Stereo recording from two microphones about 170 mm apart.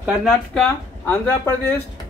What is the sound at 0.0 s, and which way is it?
Speech, 5° right (ahead or behind).